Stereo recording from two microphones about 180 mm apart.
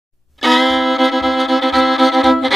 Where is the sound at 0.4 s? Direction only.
Centre (ahead or behind).